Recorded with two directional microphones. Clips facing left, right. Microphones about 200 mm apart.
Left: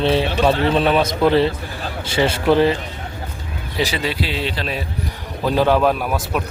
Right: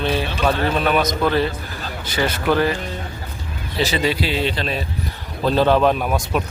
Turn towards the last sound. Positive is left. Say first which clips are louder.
# right 1 dB
turn(degrees=0)  # may be behind; listen again after turning